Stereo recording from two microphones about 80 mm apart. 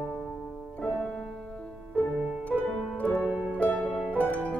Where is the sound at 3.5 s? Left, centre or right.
Centre.